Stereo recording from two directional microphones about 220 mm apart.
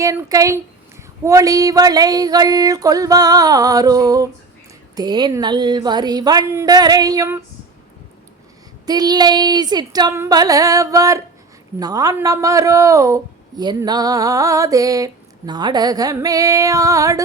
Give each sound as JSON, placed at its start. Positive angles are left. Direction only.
{"t": 0.0, "sound": "a man's voice", "side_deg": -15}
{"t": 8.9, "sound": "a man's voice", "side_deg": -20}